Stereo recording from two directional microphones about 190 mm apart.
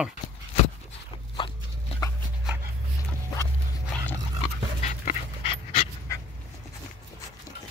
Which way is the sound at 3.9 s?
5° left (ahead or behind).